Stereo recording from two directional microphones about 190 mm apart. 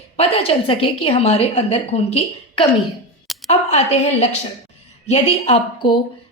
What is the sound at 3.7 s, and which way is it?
A woman's voice, 35° left (ahead or behind).